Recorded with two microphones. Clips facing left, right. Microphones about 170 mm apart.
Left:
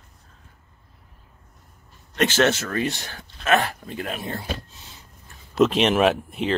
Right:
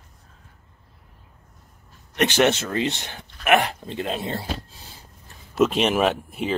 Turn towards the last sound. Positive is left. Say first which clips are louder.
# left 2 dB
turn(degrees=-5)  # may be behind; listen again after turning